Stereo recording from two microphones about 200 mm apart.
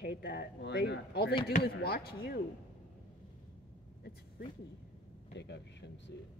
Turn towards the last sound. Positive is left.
turn(degrees=60)  # may be behind; listen again after turning